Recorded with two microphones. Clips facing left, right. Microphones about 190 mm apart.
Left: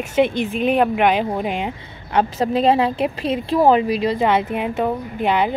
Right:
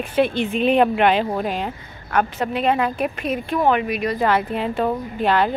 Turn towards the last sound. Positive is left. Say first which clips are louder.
# even
turn(degrees=15)  # may be behind; listen again after turning